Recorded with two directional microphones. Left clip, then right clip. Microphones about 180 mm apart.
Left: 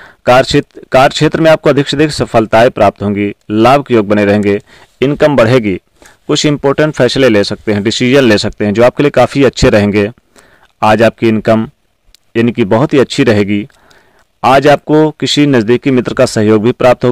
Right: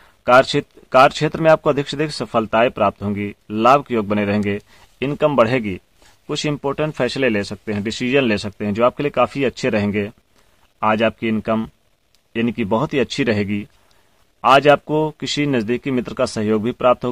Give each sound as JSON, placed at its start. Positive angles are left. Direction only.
{"t": 0.0, "sound": "speech", "side_deg": 40}